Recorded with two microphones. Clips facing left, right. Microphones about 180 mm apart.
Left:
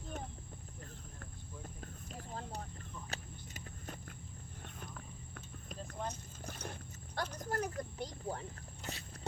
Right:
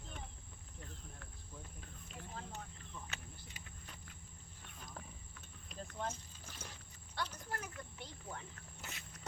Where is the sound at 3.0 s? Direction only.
40° left (ahead or behind).